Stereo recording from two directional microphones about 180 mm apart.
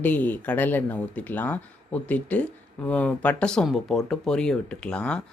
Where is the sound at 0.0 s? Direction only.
10° left (ahead or behind).